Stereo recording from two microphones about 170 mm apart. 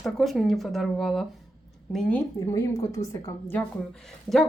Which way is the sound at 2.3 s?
20° left (ahead or behind).